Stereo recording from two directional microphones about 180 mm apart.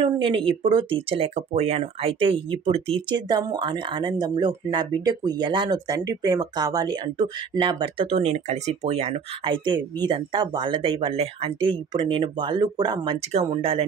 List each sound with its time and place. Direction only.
0.0 s speech: 30° right (ahead or behind)